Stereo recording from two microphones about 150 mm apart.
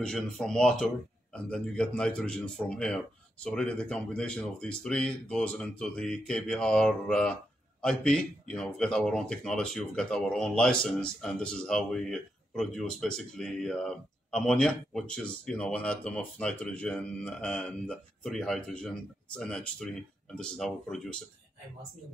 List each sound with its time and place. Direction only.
0.0 s speech: 5° left (ahead or behind)